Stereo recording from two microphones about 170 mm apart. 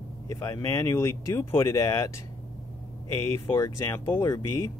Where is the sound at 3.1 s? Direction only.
15° left (ahead or behind).